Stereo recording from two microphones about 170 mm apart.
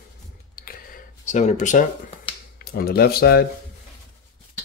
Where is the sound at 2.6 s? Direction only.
65° left (ahead or behind).